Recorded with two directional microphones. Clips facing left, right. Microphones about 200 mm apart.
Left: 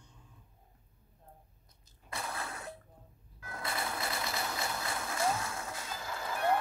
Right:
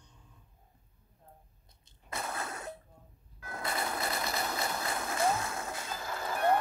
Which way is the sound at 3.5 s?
40° right (ahead or behind).